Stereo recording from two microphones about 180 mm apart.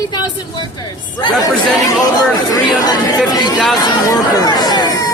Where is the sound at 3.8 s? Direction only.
20° left (ahead or behind).